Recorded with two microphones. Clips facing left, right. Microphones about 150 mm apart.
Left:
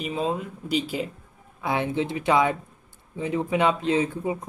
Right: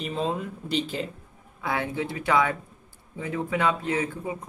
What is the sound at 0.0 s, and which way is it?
Speech, 5° left (ahead or behind).